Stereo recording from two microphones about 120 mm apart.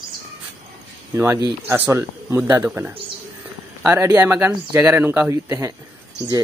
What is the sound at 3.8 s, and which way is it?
Speech, 20° right (ahead or behind).